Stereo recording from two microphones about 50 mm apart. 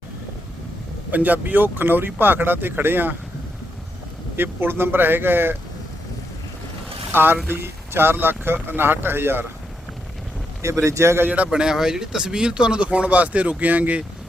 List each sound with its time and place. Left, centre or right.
1.1 s speech: right
4.4 s speech: right
7.1 s speech: right
10.8 s a man's voice: right
11.5 s speech: centre; by 14.0 s right